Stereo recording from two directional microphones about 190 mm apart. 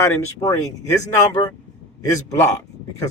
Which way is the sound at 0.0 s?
15° left (ahead or behind).